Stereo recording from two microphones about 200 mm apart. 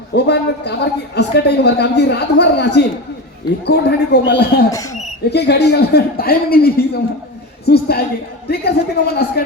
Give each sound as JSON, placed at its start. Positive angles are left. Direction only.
{"t": 0.1, "sound": "a woman's voice", "side_deg": 55}
{"t": 4.7, "sound": "speech", "side_deg": 15}
{"t": 5.3, "sound": "a man's voice", "side_deg": 55}